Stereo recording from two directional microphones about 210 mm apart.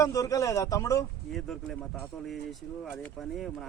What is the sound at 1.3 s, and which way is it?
Speech, centre (ahead or behind).